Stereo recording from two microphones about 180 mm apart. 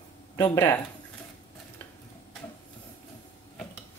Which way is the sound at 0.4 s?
20° left (ahead or behind).